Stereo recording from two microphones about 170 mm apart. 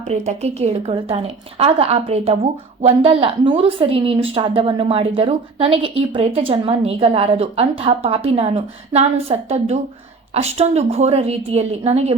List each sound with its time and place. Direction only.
0.1 s a woman's voice: 40° right (ahead or behind)